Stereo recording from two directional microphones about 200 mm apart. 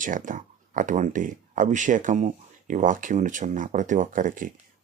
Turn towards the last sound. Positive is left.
turn(degrees=-40)  # may be behind; listen again after turning